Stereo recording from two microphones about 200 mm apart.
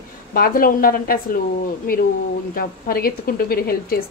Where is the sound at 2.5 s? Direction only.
45° left (ahead or behind).